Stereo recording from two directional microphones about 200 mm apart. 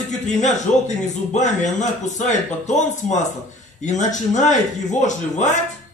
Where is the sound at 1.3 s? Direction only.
40° left (ahead or behind).